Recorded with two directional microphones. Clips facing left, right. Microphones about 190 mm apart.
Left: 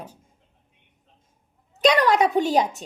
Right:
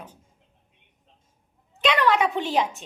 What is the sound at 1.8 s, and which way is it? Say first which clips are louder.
A woman's voice: left 3 dB; 40° left (ahead or behind).